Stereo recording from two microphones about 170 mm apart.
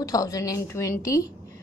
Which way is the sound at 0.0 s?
20° left (ahead or behind).